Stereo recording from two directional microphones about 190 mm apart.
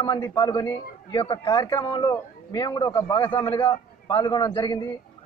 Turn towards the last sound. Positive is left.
turn(degrees=20)  # may be behind; listen again after turning